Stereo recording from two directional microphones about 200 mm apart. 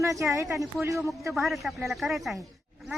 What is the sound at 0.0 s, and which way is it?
Speech, 15° right (ahead or behind).